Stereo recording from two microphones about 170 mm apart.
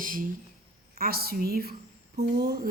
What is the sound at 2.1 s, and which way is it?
Speech, 40° right (ahead or behind).